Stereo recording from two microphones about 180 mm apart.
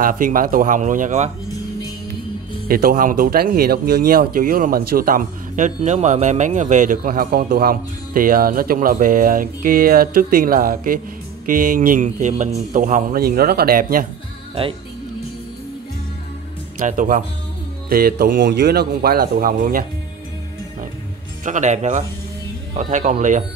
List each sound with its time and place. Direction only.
0.0 s speech: 50° right (ahead or behind)
2.7 s speech: 55° right (ahead or behind)
16.7 s speech: 45° right (ahead or behind)
17.8 s speech: 55° right (ahead or behind)
21.5 s speech: 45° right (ahead or behind)